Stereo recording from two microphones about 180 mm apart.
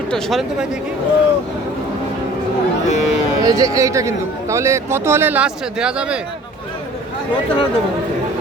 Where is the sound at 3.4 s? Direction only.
20° right (ahead or behind).